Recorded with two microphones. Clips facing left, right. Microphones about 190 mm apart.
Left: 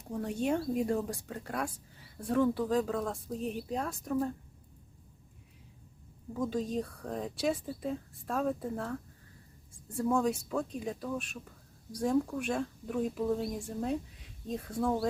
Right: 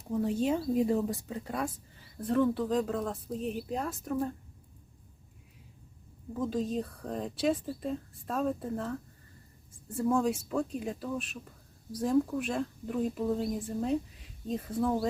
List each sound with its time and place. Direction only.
0.4 s speech: 5° right (ahead or behind)
6.3 s speech: centre (ahead or behind)
10.0 s speech: 5° right (ahead or behind)